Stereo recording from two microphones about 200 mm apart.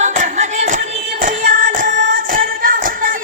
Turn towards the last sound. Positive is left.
turn(degrees=-45)  # may be behind; listen again after turning